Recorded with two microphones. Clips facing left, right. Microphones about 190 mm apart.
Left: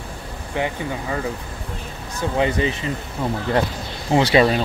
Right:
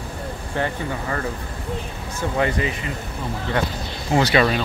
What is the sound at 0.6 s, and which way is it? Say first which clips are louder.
Speech: left 1 dB; 15° left (ahead or behind).